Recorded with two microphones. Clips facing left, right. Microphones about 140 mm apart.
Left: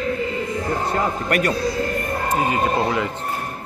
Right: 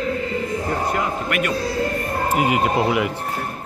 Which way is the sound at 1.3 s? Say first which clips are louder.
Left 3 dB; 40° left (ahead or behind).